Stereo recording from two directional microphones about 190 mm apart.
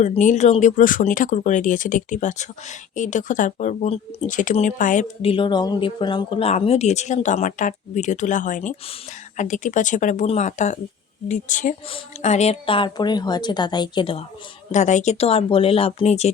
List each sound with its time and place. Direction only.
0.0 s speech: 40° left (ahead or behind)
5.3 s a woman's voice: 25° left (ahead or behind)
14.7 s speech: 40° left (ahead or behind)